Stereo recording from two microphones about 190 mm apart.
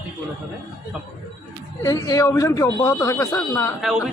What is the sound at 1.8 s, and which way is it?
Speech, 20° left (ahead or behind).